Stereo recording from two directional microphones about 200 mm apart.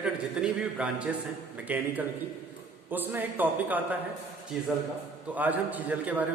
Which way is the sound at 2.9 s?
10° right (ahead or behind).